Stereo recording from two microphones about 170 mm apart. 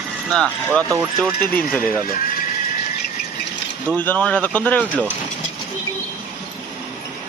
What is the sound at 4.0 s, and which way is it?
Speech, 10° left (ahead or behind).